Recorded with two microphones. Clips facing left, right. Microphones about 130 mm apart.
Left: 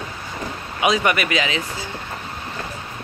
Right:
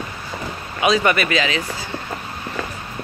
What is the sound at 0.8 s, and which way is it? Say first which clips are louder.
Speech: right 2 dB; 15° left (ahead or behind).